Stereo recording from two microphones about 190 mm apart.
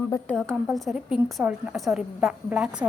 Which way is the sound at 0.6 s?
Centre (ahead or behind).